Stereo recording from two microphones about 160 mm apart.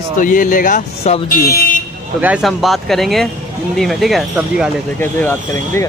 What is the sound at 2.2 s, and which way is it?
Speech, 5° right (ahead or behind).